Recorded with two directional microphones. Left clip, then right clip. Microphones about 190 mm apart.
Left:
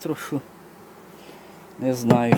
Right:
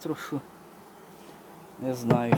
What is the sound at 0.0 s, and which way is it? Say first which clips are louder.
Speech: left 4 dB; 15° left (ahead or behind).